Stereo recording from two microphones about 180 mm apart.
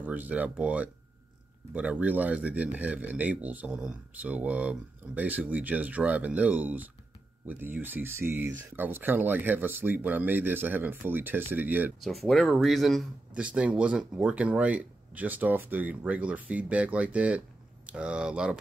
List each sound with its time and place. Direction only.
0.0 s speech: 10° right (ahead or behind)
12.1 s speech: centre (ahead or behind)